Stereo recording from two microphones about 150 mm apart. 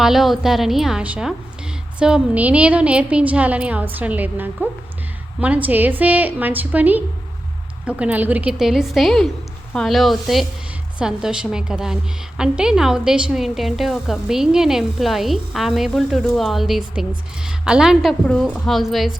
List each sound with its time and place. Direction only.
0.0 s a woman's voice: centre (ahead or behind)